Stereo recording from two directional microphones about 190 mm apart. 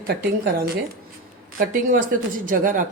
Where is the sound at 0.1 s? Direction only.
50° right (ahead or behind).